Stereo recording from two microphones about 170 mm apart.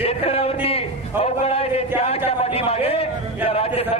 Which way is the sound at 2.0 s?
35° left (ahead or behind).